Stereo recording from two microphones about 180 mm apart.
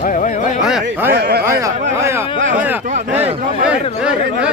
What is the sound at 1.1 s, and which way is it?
Speech, 60° right (ahead or behind).